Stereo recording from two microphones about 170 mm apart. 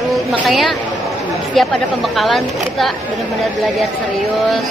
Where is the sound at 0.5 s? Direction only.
Centre (ahead or behind).